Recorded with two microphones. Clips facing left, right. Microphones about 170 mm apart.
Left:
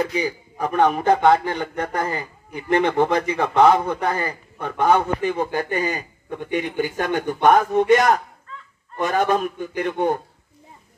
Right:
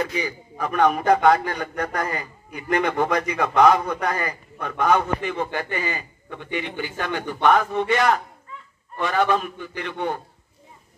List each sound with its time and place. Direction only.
0.2 s a man's voice: 35° left (ahead or behind)